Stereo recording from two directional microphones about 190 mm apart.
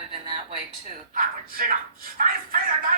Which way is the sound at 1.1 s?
45° right (ahead or behind).